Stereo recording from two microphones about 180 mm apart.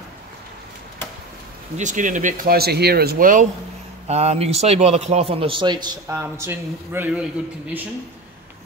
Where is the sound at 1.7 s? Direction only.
45° right (ahead or behind).